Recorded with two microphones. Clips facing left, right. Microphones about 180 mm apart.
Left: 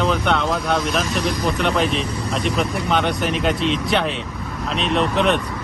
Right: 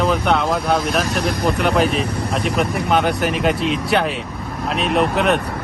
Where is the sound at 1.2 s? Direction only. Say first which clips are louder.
Right 2 dB; 60° right (ahead or behind).